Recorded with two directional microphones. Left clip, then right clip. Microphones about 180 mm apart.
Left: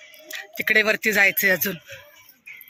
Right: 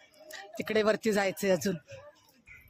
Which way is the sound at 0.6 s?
5° right (ahead or behind).